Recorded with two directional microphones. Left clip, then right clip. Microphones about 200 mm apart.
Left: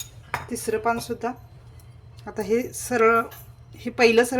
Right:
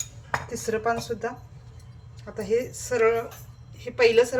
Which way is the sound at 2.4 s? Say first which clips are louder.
Left 1 dB; 60° left (ahead or behind).